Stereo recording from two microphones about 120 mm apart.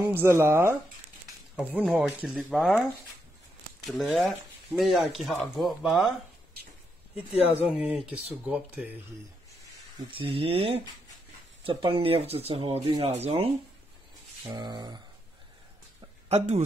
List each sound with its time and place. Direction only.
0.0 s speech: 20° right (ahead or behind); by 2.9 s centre (ahead or behind)
4.0 s speech: centre (ahead or behind)
7.5 s speech: 10° right (ahead or behind)
9.9 s speech: 45° right (ahead or behind)
14.4 s speech: 35° right (ahead or behind)
16.3 s speech: 65° right (ahead or behind)